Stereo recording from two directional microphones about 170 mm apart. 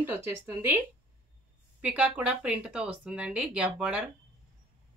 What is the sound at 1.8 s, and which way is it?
Speech, 10° right (ahead or behind).